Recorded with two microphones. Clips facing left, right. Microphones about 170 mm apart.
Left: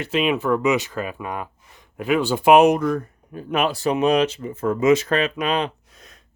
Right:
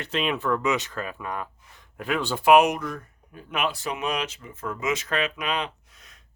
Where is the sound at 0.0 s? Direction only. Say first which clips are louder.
Left 6 dB; 10° left (ahead or behind).